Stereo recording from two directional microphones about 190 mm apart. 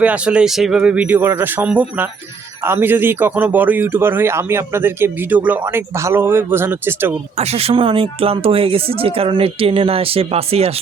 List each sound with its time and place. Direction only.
0.0 s speech: 5° right (ahead or behind)
7.3 s speech: 30° right (ahead or behind)